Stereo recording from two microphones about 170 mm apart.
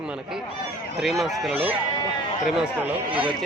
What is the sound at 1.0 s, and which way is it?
Speech, centre (ahead or behind).